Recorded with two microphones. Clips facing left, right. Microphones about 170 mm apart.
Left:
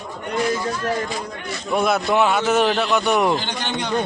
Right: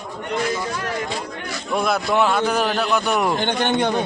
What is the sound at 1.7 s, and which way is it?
A man's voice, centre (ahead or behind).